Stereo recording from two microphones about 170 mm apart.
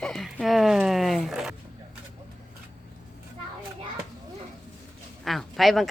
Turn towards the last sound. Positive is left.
turn(degrees=0)  # may be behind; listen again after turning